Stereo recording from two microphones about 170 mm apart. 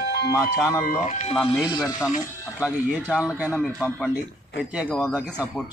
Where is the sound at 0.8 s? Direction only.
45° left (ahead or behind).